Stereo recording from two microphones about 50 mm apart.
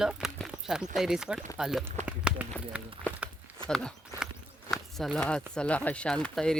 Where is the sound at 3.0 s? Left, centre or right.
Left.